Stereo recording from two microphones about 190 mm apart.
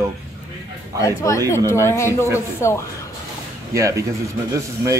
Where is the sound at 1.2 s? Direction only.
15° left (ahead or behind).